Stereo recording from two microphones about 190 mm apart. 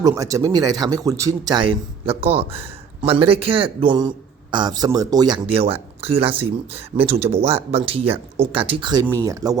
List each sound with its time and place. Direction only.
0.0 s speech: 15° right (ahead or behind)